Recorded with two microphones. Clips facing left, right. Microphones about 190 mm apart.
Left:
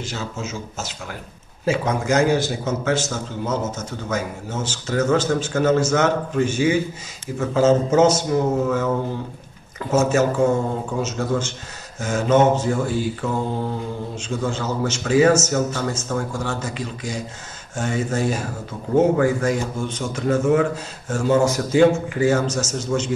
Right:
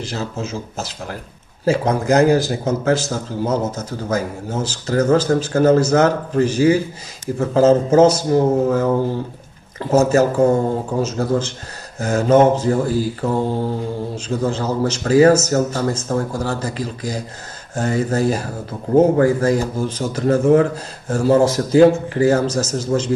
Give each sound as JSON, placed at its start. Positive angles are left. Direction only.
{"t": 0.0, "sound": "a man's voice", "side_deg": -35}